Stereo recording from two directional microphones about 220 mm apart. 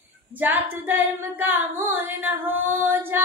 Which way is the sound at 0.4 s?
10° right (ahead or behind).